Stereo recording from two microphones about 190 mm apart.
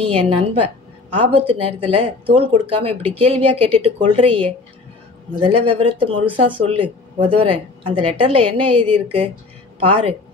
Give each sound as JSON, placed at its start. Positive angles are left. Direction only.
{"t": 0.0, "sound": "a woman's voice", "side_deg": -30}